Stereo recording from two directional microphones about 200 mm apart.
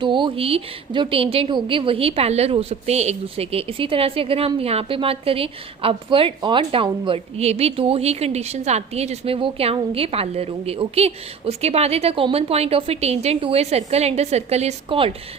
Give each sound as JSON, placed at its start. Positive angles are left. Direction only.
{"t": 0.0, "sound": "a woman's voice", "side_deg": -25}